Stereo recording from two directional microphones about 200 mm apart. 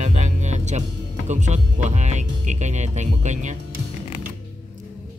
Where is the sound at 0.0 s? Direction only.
35° right (ahead or behind).